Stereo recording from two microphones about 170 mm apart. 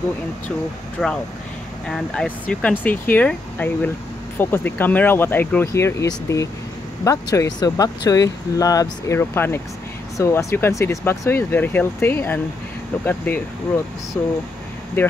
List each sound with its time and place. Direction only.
1.0 s speech: 5° right (ahead or behind)
1.9 s speech: 5° left (ahead or behind)